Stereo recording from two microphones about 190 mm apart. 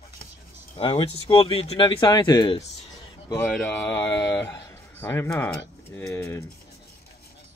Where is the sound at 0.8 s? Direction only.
30° left (ahead or behind).